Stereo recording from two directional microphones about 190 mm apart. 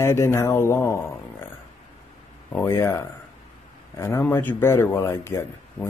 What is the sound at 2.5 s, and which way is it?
Speech, 10° left (ahead or behind).